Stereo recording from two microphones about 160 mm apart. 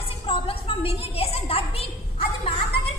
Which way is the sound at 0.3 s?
35° left (ahead or behind).